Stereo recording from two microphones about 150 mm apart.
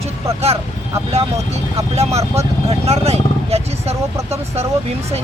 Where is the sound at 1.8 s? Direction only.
45° right (ahead or behind).